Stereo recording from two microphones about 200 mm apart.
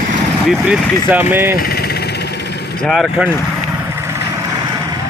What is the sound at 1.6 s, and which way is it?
Vehicle, 50° left (ahead or behind).